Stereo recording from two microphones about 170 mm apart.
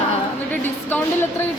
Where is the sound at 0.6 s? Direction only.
10° left (ahead or behind).